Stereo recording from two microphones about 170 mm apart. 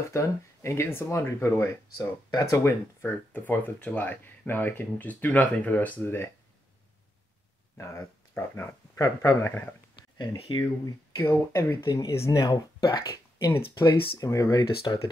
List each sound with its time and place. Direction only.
0.1 s speech: 15° left (ahead or behind)
7.7 s speech: 15° left (ahead or behind)
9.9 s a sound: 25° left (ahead or behind)
11.1 s speech: 15° left (ahead or behind)